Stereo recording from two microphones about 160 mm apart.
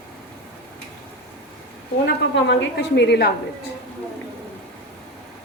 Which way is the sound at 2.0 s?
90° left.